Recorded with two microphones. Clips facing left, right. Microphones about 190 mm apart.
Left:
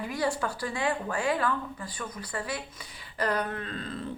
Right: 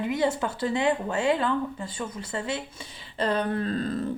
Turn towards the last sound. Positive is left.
turn(degrees=-40)  # may be behind; listen again after turning